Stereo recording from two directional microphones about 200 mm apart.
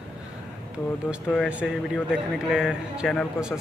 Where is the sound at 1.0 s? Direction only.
Centre (ahead or behind).